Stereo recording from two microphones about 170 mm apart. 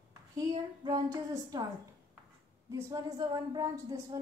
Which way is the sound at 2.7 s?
20° right (ahead or behind).